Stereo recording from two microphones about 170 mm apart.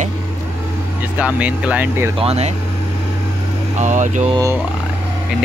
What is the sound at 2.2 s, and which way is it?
Speech, 35° right (ahead or behind).